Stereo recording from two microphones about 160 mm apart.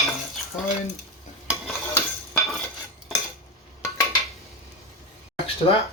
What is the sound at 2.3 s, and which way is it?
Cutlery, centre (ahead or behind).